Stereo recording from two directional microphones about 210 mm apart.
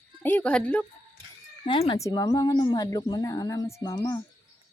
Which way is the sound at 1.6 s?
25° left (ahead or behind).